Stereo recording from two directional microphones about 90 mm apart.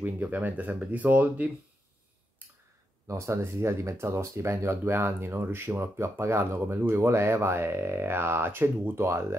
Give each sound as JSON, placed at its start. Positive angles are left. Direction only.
{"t": 0.0, "sound": "speech", "side_deg": -20}
{"t": 3.1, "sound": "speech", "side_deg": -30}